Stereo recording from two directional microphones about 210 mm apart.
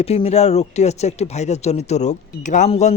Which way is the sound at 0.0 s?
30° left (ahead or behind).